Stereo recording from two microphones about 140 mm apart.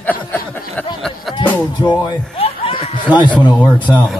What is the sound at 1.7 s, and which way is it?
Chuckle, 35° left (ahead or behind).